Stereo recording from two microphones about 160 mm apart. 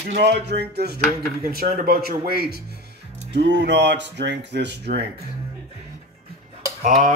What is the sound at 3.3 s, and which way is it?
Speech, 90° right.